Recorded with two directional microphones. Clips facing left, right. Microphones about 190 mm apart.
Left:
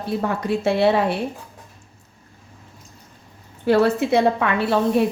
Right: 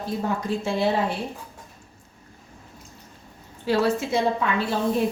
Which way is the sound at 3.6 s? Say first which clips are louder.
Left 5 dB; 60° left (ahead or behind).